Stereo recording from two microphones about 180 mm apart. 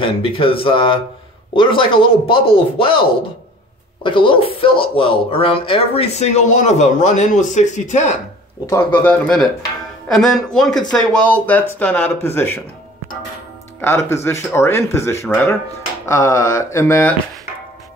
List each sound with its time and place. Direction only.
0.0 s speech: 30° left (ahead or behind)
9.0 s speech: 5° left (ahead or behind)
13.7 s speech: 15° left (ahead or behind)